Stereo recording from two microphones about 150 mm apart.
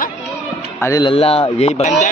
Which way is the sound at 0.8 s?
20° left (ahead or behind).